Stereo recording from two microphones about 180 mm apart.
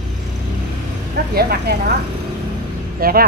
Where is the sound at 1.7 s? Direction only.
65° right (ahead or behind).